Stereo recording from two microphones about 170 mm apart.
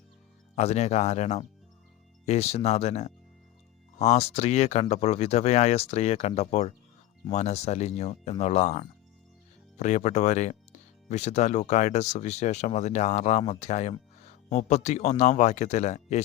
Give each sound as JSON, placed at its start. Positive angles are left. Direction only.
{"t": 0.5, "sound": "speech", "side_deg": 40}